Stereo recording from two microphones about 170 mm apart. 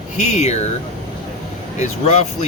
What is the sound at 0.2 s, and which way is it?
Speech, 40° left (ahead or behind).